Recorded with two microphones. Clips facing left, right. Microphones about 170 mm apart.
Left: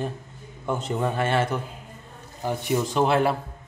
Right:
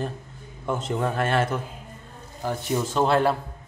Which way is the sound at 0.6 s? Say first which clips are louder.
Even; centre (ahead or behind).